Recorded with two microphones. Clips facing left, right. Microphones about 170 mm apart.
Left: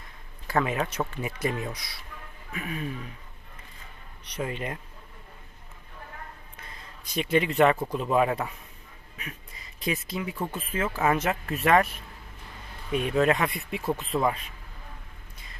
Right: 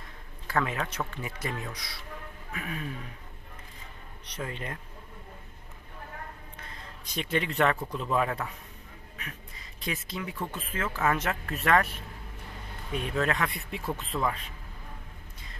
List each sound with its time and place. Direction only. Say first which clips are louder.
0.5 s speech: left 3 dB; 15° left (ahead or behind)
4.4 s speech: left 5 dB; 15° left (ahead or behind)
7.2 s speech: left 5 dB; 10° left (ahead or behind)
9.8 s speech: left 5 dB; 10° left (ahead or behind)
12.9 s speech: left 6 dB; 15° left (ahead or behind)